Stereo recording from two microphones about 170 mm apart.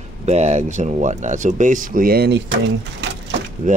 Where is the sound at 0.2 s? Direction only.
40° right (ahead or behind); by 2.4 s 70° right (ahead or behind).